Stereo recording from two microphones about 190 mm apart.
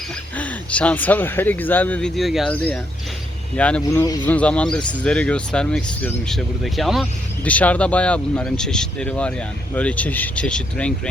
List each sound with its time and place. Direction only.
0.3 s speech: 5° left (ahead or behind)
4.0 s speech: 20° left (ahead or behind)
4.3 s speech: 5° left (ahead or behind)
4.8 s speech: 25° left (ahead or behind)
5.0 s speech: 5° left (ahead or behind)